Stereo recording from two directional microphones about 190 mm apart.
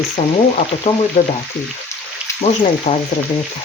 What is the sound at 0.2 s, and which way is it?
Speech, 35° left (ahead or behind).